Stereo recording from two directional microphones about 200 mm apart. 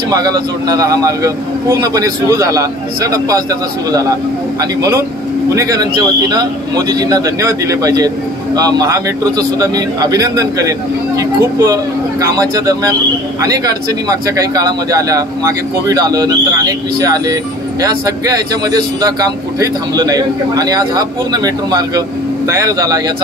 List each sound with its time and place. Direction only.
0.1 s a man's voice: 20° right (ahead or behind)
14.0 s a man's voice: 20° right (ahead or behind)